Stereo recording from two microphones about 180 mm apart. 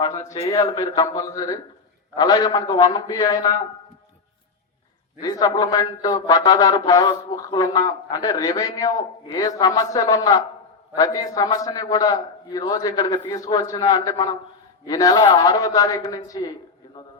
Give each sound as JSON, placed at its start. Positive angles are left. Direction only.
{"t": 0.0, "sound": "a man's voice", "side_deg": 15}
{"t": 5.2, "sound": "speech", "side_deg": 20}